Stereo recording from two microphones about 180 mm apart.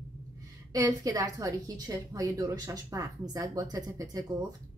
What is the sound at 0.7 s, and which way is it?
A woman's voice, 20° right (ahead or behind).